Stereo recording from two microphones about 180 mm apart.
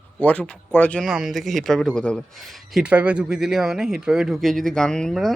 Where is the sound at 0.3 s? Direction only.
5° left (ahead or behind).